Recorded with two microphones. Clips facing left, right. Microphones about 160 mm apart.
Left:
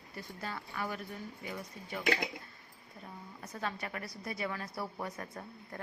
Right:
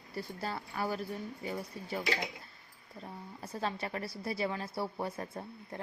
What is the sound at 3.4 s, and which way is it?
A woman's voice, 30° right (ahead or behind).